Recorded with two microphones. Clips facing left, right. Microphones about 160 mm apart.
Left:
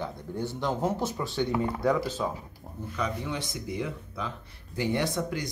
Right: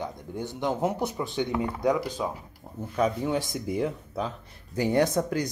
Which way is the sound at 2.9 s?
45° right (ahead or behind).